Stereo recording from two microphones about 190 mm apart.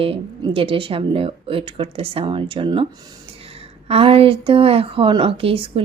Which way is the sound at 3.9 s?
30° right (ahead or behind).